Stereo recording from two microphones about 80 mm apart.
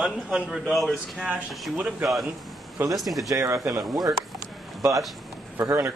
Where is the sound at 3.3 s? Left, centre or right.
Right.